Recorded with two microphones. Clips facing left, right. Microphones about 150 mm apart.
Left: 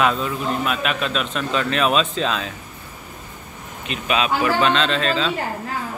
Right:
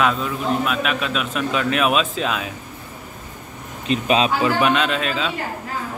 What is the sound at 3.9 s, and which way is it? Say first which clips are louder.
Speech: right 3 dB; 30° right (ahead or behind).